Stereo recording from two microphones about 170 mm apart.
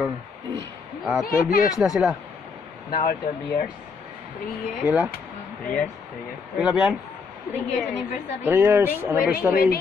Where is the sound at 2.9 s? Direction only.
60° left (ahead or behind).